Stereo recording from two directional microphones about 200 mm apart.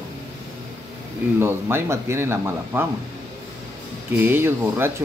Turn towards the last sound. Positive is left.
turn(degrees=-10)  # may be behind; listen again after turning